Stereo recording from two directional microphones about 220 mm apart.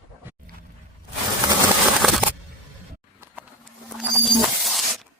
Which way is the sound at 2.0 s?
Centre (ahead or behind).